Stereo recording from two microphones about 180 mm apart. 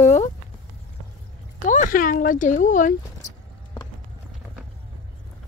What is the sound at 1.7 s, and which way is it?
Speech, 50° left (ahead or behind).